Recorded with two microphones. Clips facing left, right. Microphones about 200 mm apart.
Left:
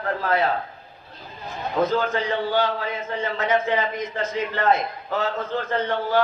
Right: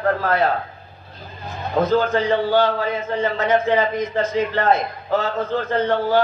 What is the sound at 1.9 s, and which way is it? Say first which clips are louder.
A man's voice: right 5 dB; 35° right (ahead or behind).